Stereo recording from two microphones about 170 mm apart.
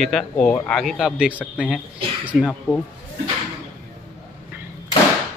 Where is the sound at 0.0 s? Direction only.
5° left (ahead or behind).